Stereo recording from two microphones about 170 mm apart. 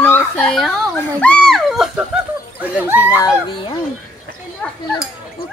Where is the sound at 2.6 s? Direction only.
10° right (ahead or behind).